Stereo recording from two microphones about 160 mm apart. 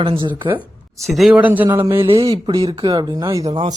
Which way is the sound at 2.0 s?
35° right (ahead or behind).